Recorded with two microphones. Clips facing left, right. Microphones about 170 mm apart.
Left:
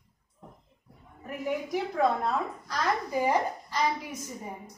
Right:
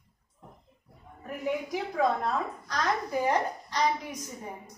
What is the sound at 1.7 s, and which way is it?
A woman's voice, centre (ahead or behind).